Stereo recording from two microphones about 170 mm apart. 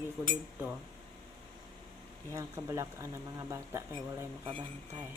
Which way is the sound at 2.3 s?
20° right (ahead or behind).